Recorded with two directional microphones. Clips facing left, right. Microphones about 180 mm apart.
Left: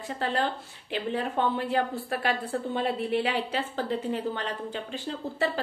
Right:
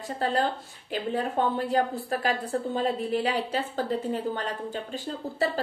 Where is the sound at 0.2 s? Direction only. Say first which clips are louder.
Right 2 dB; 40° right (ahead or behind).